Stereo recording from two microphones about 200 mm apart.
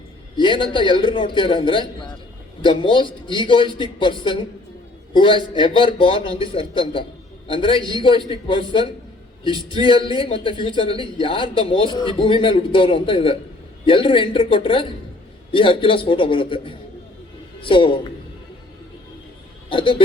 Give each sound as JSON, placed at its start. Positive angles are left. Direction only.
{"t": 0.3, "sound": "a man's voice", "side_deg": 25}
{"t": 9.8, "sound": "a man's voice", "side_deg": 25}
{"t": 19.7, "sound": "a man's voice", "side_deg": 25}